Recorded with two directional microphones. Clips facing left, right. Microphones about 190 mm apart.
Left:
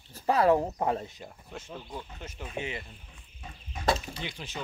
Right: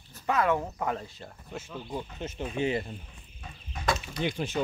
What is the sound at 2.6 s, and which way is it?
Speech, 40° right (ahead or behind).